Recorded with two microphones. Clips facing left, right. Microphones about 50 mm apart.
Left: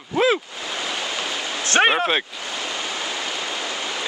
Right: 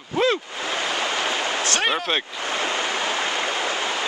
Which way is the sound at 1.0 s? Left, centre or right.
Right.